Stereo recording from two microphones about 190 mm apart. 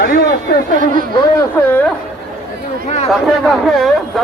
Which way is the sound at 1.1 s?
20° left (ahead or behind).